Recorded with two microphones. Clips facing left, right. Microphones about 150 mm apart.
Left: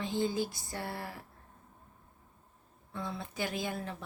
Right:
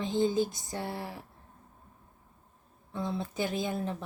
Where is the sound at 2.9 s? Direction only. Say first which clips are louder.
Right 5 dB; 20° right (ahead or behind).